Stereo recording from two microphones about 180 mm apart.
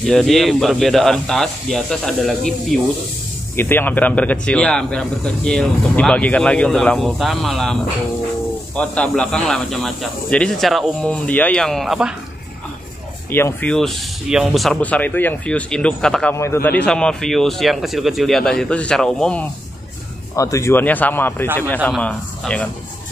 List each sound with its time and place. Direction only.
0.0 s speech: centre (ahead or behind)
13.3 s speech: 15° left (ahead or behind)
16.3 s speech: 15° left (ahead or behind)
20.3 s speech: 15° left (ahead or behind)